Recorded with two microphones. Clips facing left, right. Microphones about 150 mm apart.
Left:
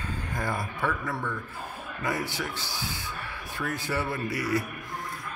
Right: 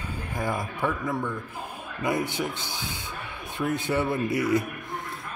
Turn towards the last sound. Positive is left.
turn(degrees=-20)  # may be behind; listen again after turning